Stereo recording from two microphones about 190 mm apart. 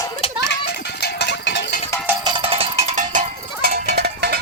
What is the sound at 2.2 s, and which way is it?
Cowbell, 25° right (ahead or behind).